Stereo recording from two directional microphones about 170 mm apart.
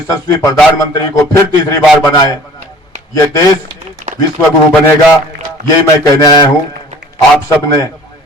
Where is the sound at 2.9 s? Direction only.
45° right (ahead or behind).